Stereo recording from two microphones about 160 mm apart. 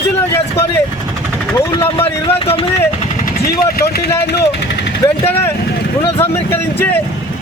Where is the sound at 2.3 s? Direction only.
35° left (ahead or behind).